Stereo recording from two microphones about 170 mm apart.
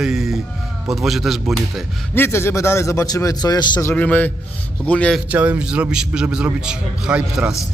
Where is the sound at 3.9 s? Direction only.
10° left (ahead or behind).